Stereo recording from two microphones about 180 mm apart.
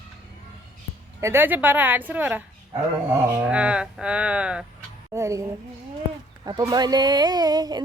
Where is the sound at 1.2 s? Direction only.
10° right (ahead or behind).